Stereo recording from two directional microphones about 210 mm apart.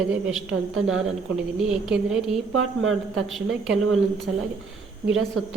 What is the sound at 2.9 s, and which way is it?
Speech, centre (ahead or behind).